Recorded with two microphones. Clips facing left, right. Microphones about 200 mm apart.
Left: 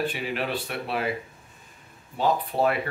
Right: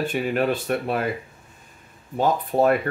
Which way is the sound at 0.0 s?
45° right (ahead or behind).